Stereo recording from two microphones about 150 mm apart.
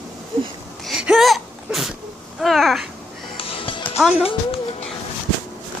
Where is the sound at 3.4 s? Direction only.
35° left (ahead or behind).